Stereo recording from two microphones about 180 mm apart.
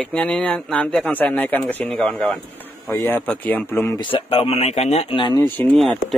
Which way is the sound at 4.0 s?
30° left (ahead or behind).